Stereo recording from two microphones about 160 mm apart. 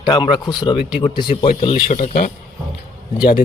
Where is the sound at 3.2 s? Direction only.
30° left (ahead or behind).